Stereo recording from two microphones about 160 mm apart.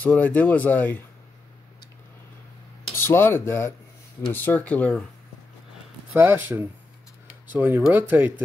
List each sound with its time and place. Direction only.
0.0 s speech: 10° left (ahead or behind)
3.0 s speech: 15° left (ahead or behind)
6.1 s speech: 15° right (ahead or behind)